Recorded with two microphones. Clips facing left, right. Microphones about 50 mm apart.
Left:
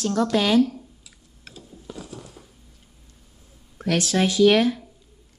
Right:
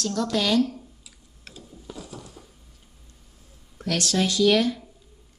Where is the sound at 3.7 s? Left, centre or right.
Centre.